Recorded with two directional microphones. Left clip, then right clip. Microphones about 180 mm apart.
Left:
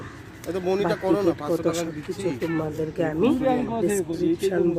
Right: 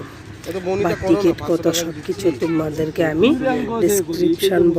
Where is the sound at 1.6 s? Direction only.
15° right (ahead or behind).